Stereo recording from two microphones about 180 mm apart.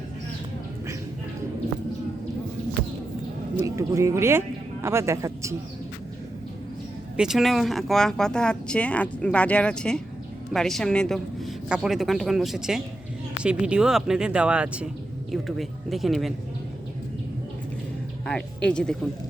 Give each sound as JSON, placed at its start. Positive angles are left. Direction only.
{"t": 3.8, "sound": "a man's voice", "side_deg": -15}
{"t": 7.2, "sound": "speech", "side_deg": 0}
{"t": 18.3, "sound": "speech", "side_deg": 5}